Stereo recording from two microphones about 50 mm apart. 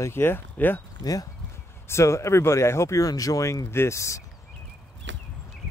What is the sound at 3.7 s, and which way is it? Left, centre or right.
Speech, left.